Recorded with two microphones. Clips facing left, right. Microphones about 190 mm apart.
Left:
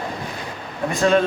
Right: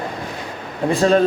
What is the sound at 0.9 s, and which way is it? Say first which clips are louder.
Speech: right 2 dB; 35° right (ahead or behind).